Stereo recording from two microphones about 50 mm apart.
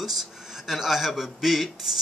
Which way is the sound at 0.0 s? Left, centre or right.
Centre.